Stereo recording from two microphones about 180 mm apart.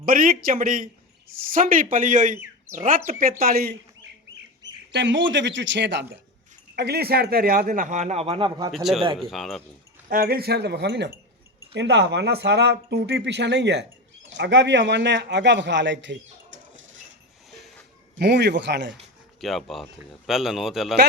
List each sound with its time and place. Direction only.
0.0 s speech: 50° right (ahead or behind)
4.9 s speech: 90° right
6.7 s speech: 60° right (ahead or behind); by 8.7 s 25° right (ahead or behind)
8.7 s speech: centre (ahead or behind)
10.1 s speech: 55° right (ahead or behind); by 16.8 s 85° right
18.2 s speech: 70° right (ahead or behind)
19.4 s speech: centre (ahead or behind)